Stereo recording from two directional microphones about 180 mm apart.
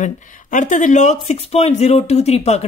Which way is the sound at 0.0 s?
45° left (ahead or behind).